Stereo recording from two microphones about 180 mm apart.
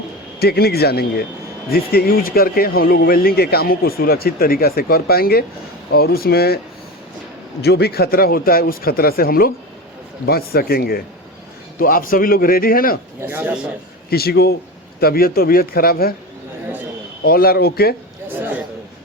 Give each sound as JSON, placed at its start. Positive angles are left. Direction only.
{"t": 0.3, "sound": "speech", "side_deg": 60}
{"t": 7.6, "sound": "a man's voice", "side_deg": 65}
{"t": 13.2, "sound": "speech", "side_deg": -10}
{"t": 14.1, "sound": "speech", "side_deg": 60}
{"t": 17.2, "sound": "speech", "side_deg": 55}
{"t": 18.3, "sound": "a sound", "side_deg": -10}